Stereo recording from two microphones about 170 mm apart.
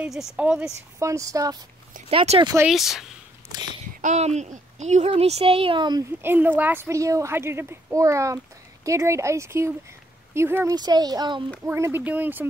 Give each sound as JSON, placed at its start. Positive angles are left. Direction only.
{"t": 0.0, "sound": "a woman's voice", "side_deg": -5}
{"t": 0.9, "sound": "speech", "side_deg": -20}
{"t": 2.0, "sound": "speech", "side_deg": -35}
{"t": 2.7, "sound": "speech", "side_deg": 0}
{"t": 4.0, "sound": "speech", "side_deg": -40}
{"t": 6.2, "sound": "a woman's voice", "side_deg": -10}
{"t": 11.6, "sound": "a woman's voice", "side_deg": -15}